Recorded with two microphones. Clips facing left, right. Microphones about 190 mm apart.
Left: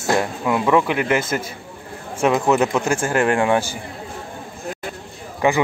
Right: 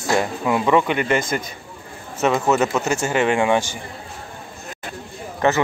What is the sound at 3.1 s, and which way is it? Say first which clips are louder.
Speech: even; centre (ahead or behind).